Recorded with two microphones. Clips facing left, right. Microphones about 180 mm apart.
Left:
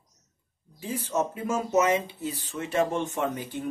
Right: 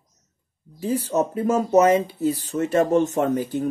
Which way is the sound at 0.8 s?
40° right (ahead or behind).